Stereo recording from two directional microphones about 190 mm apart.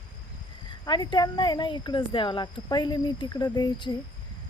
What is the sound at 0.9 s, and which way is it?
Speech, 25° left (ahead or behind).